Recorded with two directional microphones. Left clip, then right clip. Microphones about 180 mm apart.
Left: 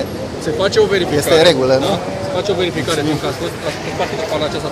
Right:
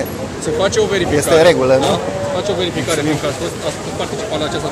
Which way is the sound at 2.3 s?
30° left (ahead or behind).